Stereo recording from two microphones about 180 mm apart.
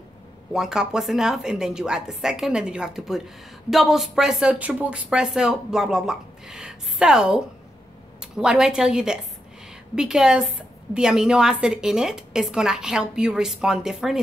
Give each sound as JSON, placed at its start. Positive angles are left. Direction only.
{"t": 0.5, "sound": "speech", "side_deg": -5}